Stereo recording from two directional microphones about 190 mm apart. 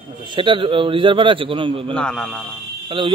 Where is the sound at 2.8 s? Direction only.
25° right (ahead or behind).